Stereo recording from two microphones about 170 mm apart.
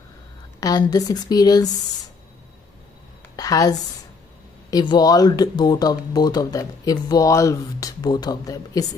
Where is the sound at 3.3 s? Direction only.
20° left (ahead or behind).